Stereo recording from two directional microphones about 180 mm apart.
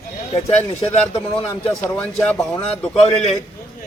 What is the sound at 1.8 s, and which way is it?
A man's voice, 5° left (ahead or behind).